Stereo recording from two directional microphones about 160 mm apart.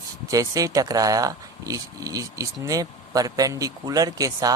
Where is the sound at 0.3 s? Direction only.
20° right (ahead or behind).